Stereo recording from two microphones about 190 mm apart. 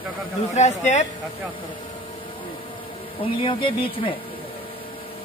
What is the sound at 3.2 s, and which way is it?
Speech, 30° left (ahead or behind).